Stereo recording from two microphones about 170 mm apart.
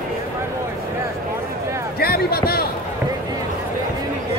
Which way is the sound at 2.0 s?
65° left (ahead or behind).